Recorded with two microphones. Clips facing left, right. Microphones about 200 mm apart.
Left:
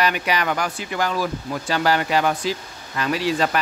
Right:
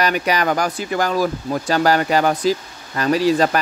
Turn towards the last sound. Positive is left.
turn(degrees=-40)  # may be behind; listen again after turning